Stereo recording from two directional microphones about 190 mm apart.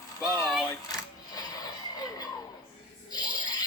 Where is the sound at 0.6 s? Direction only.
15° left (ahead or behind).